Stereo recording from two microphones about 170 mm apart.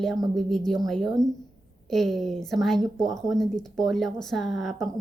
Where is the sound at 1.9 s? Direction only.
Centre (ahead or behind).